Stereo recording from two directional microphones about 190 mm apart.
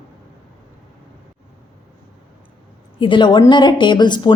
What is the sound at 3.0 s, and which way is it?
A woman's voice, 25° left (ahead or behind).